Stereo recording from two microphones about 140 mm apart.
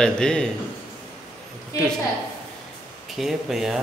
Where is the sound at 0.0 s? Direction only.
5° left (ahead or behind).